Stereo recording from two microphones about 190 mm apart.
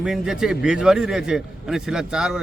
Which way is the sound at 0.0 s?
5° right (ahead or behind).